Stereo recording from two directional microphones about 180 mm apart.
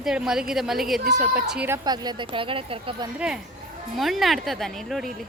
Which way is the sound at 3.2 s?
5° right (ahead or behind).